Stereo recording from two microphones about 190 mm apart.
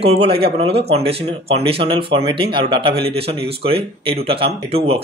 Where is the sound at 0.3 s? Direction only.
55° right (ahead or behind).